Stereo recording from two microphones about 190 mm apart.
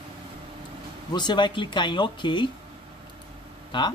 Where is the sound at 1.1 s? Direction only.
25° left (ahead or behind).